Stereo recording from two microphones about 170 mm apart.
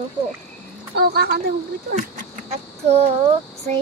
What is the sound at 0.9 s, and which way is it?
Speech, 70° right (ahead or behind).